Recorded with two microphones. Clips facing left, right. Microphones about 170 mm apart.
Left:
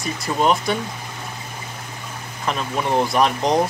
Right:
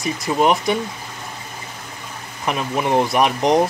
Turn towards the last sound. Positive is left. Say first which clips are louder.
# right 2 dB
turn(degrees=-15)  # may be behind; listen again after turning